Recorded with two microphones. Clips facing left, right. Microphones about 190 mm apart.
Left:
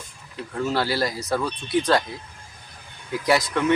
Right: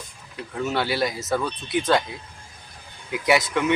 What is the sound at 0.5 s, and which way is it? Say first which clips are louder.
Speech: left 1 dB; centre (ahead or behind).